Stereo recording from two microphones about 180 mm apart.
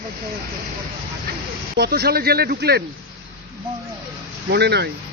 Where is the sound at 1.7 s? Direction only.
60° right (ahead or behind).